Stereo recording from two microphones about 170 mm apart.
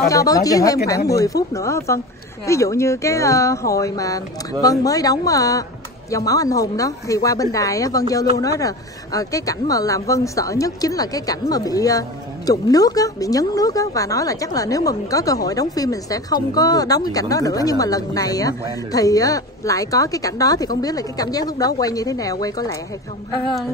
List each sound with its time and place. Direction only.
0.1 s speech: 20° left (ahead or behind)